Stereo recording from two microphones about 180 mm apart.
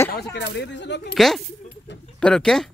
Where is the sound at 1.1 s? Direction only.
Centre (ahead or behind).